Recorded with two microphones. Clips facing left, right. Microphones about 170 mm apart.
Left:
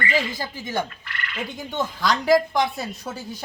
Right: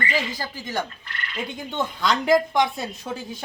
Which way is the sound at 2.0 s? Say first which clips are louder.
Left 1 dB; centre (ahead or behind).